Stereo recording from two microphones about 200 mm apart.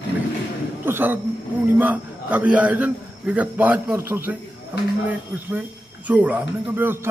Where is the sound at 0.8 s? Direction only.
10° right (ahead or behind).